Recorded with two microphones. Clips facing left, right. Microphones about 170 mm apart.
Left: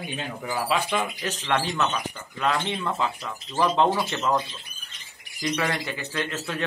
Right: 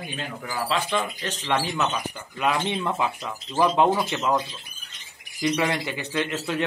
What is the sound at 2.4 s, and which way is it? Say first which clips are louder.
Speech: right 1 dB; 15° right (ahead or behind).